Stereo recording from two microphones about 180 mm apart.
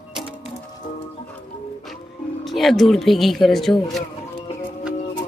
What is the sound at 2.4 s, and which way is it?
Speech, centre (ahead or behind).